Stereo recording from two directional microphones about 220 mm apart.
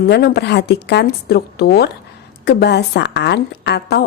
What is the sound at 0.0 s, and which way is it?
Speech, 45° left (ahead or behind).